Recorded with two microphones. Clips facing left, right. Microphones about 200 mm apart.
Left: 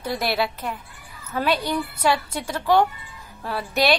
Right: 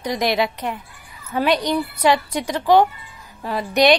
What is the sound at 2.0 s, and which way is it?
A woman's voice, 15° right (ahead or behind).